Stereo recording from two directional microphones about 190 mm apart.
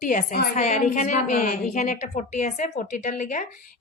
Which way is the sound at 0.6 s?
40° left (ahead or behind).